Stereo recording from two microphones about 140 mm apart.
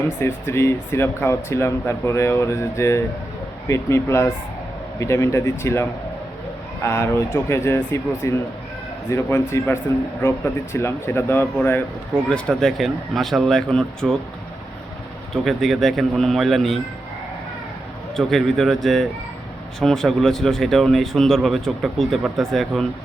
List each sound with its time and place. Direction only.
0.2 s speech: 20° left (ahead or behind)
12.3 s speech: 5° left (ahead or behind)
15.3 s speech: centre (ahead or behind)
18.2 s speech: centre (ahead or behind)